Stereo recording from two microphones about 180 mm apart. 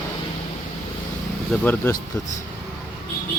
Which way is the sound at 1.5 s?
10° left (ahead or behind).